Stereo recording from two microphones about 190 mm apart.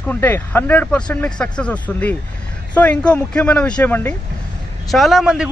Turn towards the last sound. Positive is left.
turn(degrees=0)  # may be behind; listen again after turning